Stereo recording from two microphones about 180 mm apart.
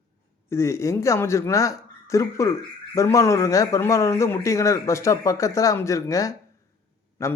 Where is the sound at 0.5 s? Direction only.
15° left (ahead or behind).